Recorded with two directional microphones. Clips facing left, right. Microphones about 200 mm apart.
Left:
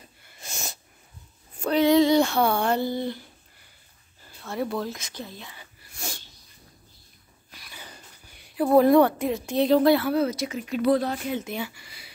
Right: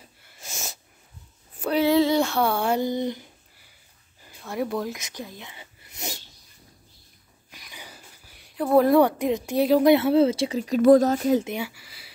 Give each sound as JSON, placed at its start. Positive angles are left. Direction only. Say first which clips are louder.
{"t": 0.0, "sound": "sneeze", "louder": "even", "side_deg": 0}
{"t": 1.6, "sound": "speech", "louder": "left 1 dB", "side_deg": -5}
{"t": 4.2, "sound": "a sound", "louder": "right 1 dB", "side_deg": -15}
{"t": 7.5, "sound": "a sound", "louder": "even", "side_deg": -15}
{"t": 9.0, "sound": "a woman's voice", "louder": "right 1 dB", "side_deg": -15}
{"t": 9.8, "sound": "speech", "louder": "right 3 dB", "side_deg": -25}
{"t": 10.8, "sound": "speech", "louder": "right 7 dB", "side_deg": -45}
{"t": 11.4, "sound": "speech", "louder": "right 2 dB", "side_deg": -10}